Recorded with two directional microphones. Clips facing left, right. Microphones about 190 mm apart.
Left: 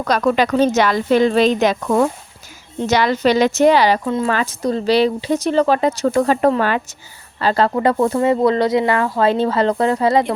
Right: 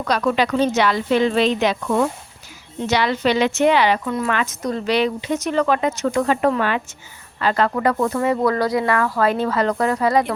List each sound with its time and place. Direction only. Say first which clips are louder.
0.0 s a woman's voice: left 3 dB; 45° left (ahead or behind); by 10.3 s 25° left (ahead or behind)